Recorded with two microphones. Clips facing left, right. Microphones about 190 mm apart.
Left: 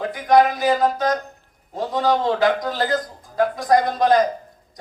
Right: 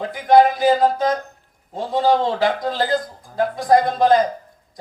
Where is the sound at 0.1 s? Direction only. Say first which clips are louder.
Right 3 dB; 25° right (ahead or behind).